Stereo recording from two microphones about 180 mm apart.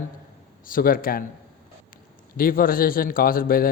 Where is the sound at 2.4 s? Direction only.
55° left (ahead or behind).